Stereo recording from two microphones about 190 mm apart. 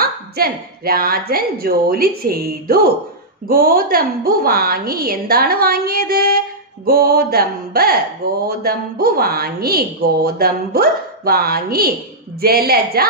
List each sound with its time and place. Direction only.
0.0 s a woman's voice: 50° right (ahead or behind)